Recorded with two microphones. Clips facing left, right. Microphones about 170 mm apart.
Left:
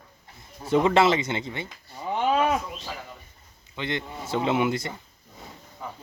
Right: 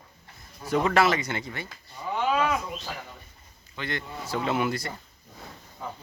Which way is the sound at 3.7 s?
20° left (ahead or behind).